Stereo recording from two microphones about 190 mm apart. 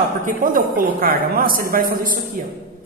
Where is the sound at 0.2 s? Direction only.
45° right (ahead or behind).